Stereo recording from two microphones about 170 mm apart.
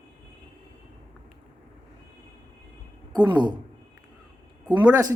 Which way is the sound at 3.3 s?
25° right (ahead or behind).